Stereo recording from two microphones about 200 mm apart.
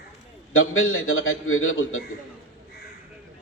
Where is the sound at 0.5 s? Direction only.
90° left.